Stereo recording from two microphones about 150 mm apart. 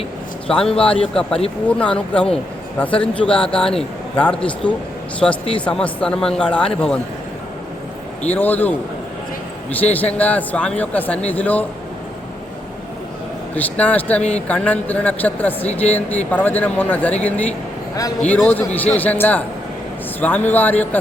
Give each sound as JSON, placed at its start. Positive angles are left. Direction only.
{"t": 0.4, "sound": "a man's voice", "side_deg": 5}
{"t": 8.2, "sound": "a man's voice", "side_deg": 10}
{"t": 9.9, "sound": "a man's voice", "side_deg": 10}
{"t": 13.6, "sound": "a man's voice", "side_deg": 10}
{"t": 14.2, "sound": "speech", "side_deg": 50}
{"t": 14.4, "sound": "a man's voice", "side_deg": 10}